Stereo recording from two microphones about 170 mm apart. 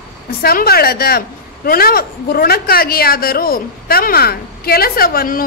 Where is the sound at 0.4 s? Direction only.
65° left (ahead or behind).